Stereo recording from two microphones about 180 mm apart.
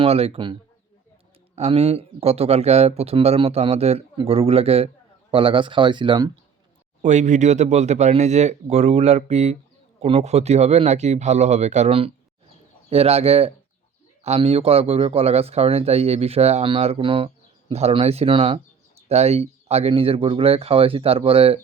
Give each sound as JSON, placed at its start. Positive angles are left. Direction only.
{"t": 0.0, "sound": "speech", "side_deg": -35}
{"t": 1.5, "sound": "speech", "side_deg": -35}
{"t": 7.0, "sound": "speech", "side_deg": -40}